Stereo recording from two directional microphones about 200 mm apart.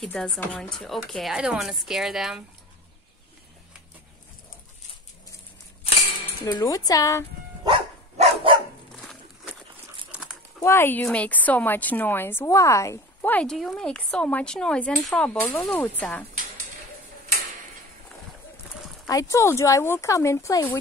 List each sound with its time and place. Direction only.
0.0 s a woman's voice: 5° left (ahead or behind)
6.4 s speech: 20° left (ahead or behind)
7.7 s dog: 25° right (ahead or behind)
9.0 s a sound: centre (ahead or behind)
10.6 s a woman's voice: 10° left (ahead or behind)
19.0 s a woman's voice: 15° left (ahead or behind)